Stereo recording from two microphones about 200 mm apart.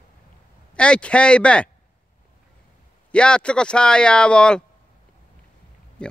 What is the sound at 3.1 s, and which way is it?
Speech, 5° left (ahead or behind).